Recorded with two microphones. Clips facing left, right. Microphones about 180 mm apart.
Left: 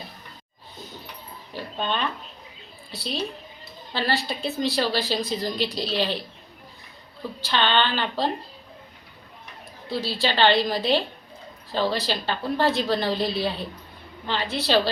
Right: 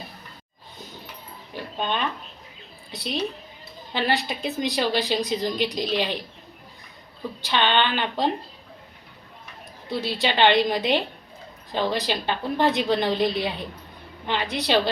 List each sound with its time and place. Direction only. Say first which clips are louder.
2.9 s a woman's voice: right 2 dB; 20° right (ahead or behind)
7.4 s a woman's voice: right 1 dB; 15° right (ahead or behind)
10.0 s a woman's voice: right 1 dB; 20° right (ahead or behind)